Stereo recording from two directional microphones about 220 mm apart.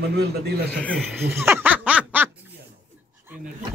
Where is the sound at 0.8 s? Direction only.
5° left (ahead or behind).